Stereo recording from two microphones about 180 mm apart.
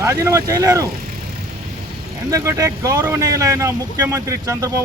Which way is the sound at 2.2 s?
15° right (ahead or behind).